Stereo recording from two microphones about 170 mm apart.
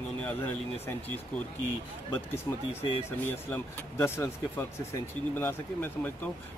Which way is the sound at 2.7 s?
35° left (ahead or behind).